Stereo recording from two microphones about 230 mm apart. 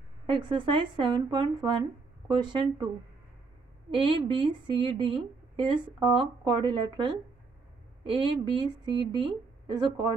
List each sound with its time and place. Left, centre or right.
0.3 s speech: right
3.9 s speech: right